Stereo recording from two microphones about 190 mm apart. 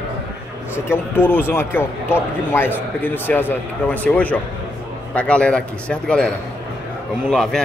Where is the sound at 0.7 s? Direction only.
10° left (ahead or behind).